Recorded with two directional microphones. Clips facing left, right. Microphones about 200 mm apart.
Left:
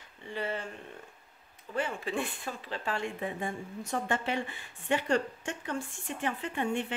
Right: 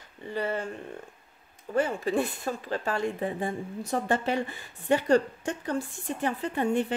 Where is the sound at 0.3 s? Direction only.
40° right (ahead or behind).